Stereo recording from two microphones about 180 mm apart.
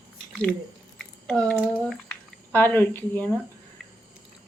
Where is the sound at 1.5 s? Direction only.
5° right (ahead or behind).